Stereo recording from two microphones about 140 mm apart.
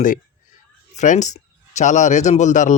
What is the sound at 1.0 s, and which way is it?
Speech, 60° left (ahead or behind).